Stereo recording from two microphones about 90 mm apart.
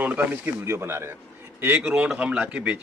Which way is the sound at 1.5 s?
15° right (ahead or behind).